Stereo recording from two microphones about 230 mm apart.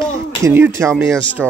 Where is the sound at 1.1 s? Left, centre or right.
Centre.